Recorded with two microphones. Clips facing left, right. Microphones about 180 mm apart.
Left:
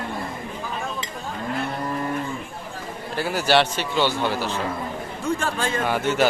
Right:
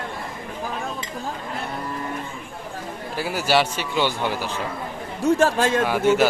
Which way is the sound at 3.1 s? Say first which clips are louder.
Left 1 dB; 5° right (ahead or behind).